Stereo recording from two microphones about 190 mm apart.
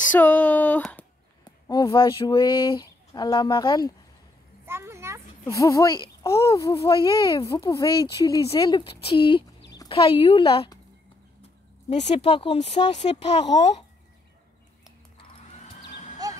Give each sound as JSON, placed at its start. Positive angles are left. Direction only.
{"t": 0.1, "sound": "speech", "side_deg": 10}
{"t": 1.7, "sound": "speech", "side_deg": 20}
{"t": 4.6, "sound": "a sound", "side_deg": -15}
{"t": 5.5, "sound": "speech", "side_deg": 15}
{"t": 11.9, "sound": "speech", "side_deg": 35}
{"t": 16.2, "sound": "music", "side_deg": -20}